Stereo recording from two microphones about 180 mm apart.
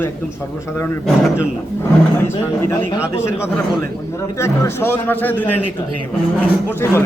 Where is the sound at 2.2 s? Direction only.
15° left (ahead or behind).